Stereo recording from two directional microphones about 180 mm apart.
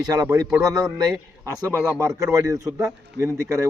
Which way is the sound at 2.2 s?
20° right (ahead or behind).